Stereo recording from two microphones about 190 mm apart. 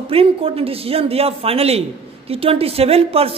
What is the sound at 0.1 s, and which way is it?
A man's voice, 30° right (ahead or behind).